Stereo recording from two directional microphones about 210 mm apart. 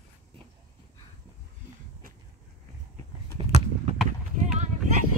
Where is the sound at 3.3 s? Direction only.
30° right (ahead or behind).